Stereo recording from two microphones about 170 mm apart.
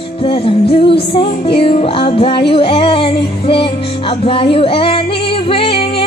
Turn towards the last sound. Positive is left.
turn(degrees=30)  # may be behind; listen again after turning